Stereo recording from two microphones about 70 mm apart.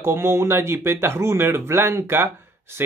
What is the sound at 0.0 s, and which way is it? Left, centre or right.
Speech, right.